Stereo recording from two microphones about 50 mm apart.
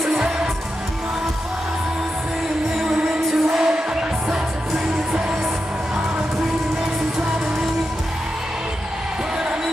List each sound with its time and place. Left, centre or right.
0.0 s music: centre
2.8 s music: centre